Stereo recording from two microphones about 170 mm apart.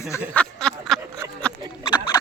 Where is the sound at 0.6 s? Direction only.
5° left (ahead or behind).